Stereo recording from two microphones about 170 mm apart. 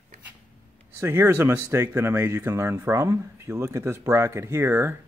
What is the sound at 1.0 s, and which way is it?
Speech, 15° right (ahead or behind).